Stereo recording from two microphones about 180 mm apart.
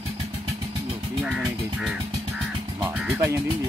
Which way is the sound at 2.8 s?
15° right (ahead or behind).